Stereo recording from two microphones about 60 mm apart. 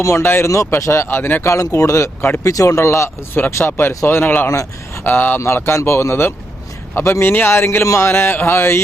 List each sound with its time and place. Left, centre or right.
0.2 s speech: left
0.4 s speech: left
1.0 s speech: left
1.5 s speech: left
2.4 s speech: left
3.3 s speech: left
5.5 s a sound: left